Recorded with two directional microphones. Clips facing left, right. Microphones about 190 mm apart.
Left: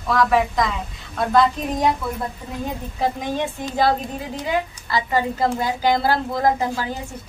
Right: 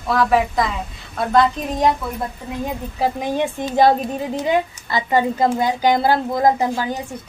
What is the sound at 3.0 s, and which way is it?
Speech, 10° right (ahead or behind).